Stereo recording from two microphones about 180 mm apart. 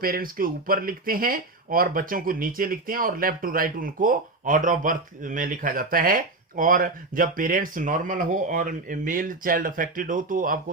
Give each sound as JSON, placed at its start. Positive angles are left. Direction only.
{"t": 0.0, "sound": "speech", "side_deg": -55}